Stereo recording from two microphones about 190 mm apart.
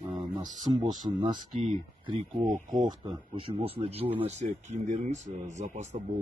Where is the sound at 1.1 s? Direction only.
25° right (ahead or behind).